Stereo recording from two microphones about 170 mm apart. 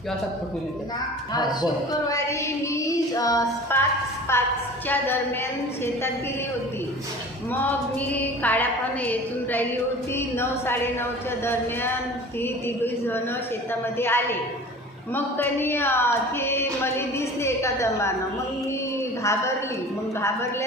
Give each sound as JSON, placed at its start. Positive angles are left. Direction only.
{"t": 1.3, "sound": "speech", "side_deg": 25}
{"t": 7.5, "sound": "speech", "side_deg": 10}
{"t": 19.2, "sound": "speech", "side_deg": 15}